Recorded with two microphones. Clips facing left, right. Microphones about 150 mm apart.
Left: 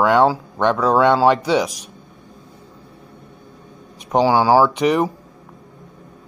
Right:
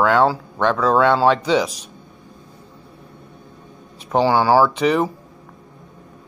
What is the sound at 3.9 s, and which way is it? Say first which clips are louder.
Speech: left 1 dB; 10° left (ahead or behind).